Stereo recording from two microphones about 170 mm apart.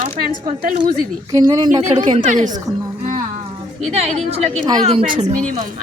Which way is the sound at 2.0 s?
45° right (ahead or behind).